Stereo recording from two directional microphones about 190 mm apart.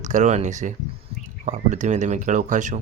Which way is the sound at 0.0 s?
40° right (ahead or behind).